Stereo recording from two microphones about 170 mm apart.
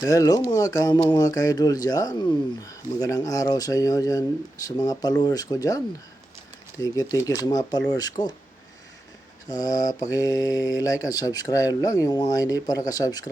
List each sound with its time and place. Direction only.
0.0 s speech: 20° left (ahead or behind)
9.5 s speech: 20° left (ahead or behind)